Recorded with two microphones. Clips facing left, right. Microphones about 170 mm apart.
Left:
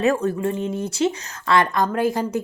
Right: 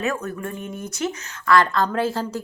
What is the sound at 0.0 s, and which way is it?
A woman's voice, 30° left (ahead or behind).